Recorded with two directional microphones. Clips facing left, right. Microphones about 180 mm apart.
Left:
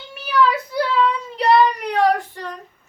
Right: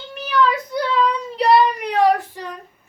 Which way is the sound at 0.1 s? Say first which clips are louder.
Even; 5° left (ahead or behind).